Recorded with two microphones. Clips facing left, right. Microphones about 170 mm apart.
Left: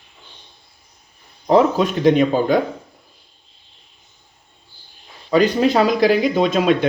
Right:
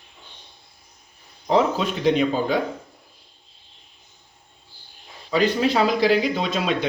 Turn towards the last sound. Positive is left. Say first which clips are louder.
# left 8 dB
turn(degrees=50)  # may be behind; listen again after turning